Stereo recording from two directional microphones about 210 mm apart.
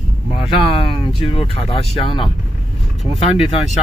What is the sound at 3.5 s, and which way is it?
Speech, 35° left (ahead or behind).